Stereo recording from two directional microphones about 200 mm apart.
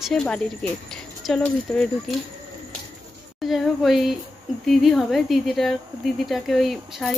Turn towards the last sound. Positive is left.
turn(degrees=0)  # may be behind; listen again after turning